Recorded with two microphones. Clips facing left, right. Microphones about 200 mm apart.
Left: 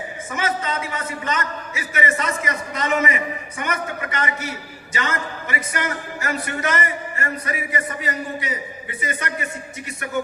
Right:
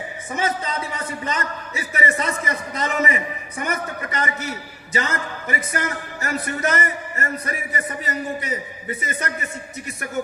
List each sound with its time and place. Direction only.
0.3 s a man's voice: 35° right (ahead or behind)